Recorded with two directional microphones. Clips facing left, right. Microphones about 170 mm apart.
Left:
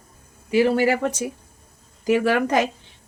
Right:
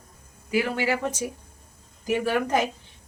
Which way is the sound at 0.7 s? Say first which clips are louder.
Left 6 dB; 45° left (ahead or behind).